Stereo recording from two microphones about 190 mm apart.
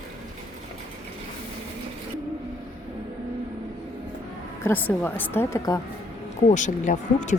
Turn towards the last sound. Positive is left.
turn(degrees=40)  # may be behind; listen again after turning